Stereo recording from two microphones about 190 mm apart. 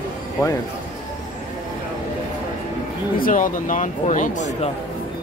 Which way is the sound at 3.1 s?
45° left (ahead or behind).